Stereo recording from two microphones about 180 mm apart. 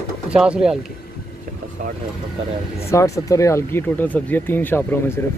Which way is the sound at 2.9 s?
15° left (ahead or behind).